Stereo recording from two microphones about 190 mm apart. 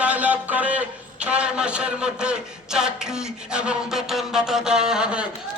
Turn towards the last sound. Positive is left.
turn(degrees=-5)  # may be behind; listen again after turning